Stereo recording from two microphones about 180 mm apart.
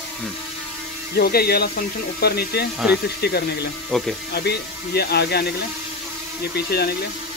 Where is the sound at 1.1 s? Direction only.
60° left (ahead or behind).